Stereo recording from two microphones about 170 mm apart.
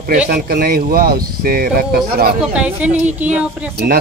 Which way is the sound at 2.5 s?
5° right (ahead or behind).